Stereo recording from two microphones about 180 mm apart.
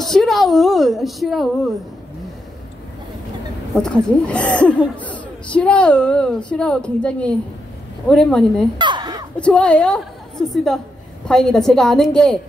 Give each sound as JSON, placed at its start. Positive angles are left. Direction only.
{"t": 0.0, "sound": "a woman's voice", "side_deg": 0}
{"t": 3.7, "sound": "speech", "side_deg": 5}
{"t": 8.7, "sound": "a sound", "side_deg": -25}
{"t": 9.4, "sound": "a woman's voice", "side_deg": 5}